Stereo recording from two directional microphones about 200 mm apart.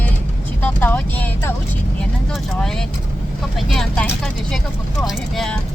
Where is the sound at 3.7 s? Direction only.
Centre (ahead or behind).